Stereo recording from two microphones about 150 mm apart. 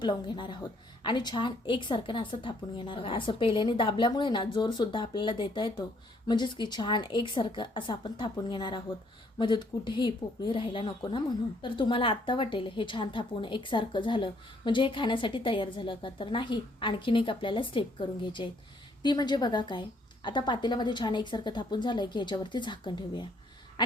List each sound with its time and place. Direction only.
0.0 s a woman's voice: 30° left (ahead or behind)